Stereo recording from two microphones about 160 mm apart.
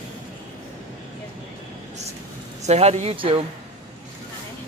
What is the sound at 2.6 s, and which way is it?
Speech, 40° right (ahead or behind).